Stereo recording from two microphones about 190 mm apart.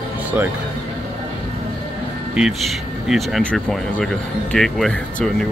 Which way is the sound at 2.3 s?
Centre (ahead or behind).